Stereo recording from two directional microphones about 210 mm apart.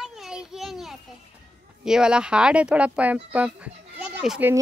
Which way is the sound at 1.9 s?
5° right (ahead or behind).